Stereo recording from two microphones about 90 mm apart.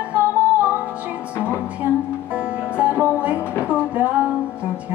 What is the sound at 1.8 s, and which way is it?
Music, 25° right (ahead or behind).